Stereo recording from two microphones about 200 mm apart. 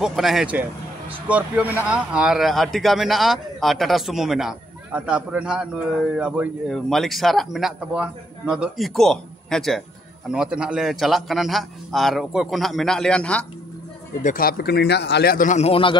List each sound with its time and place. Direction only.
0.0 s a man's voice: centre (ahead or behind)
14.2 s speech: 45° left (ahead or behind); by 16.0 s 25° left (ahead or behind)